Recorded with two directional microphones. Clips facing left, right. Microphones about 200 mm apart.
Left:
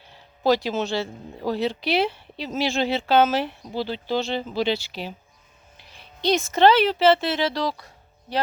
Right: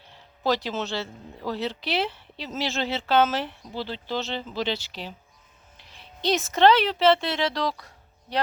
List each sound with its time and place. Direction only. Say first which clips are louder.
0.4 s speech: left 5 dB; 10° left (ahead or behind)
6.0 s speech: left 3 dB; centre (ahead or behind)